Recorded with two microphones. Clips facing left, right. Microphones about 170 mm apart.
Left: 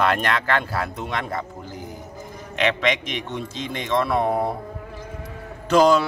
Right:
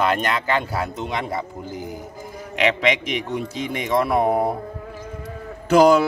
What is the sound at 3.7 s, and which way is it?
Speech, 15° right (ahead or behind).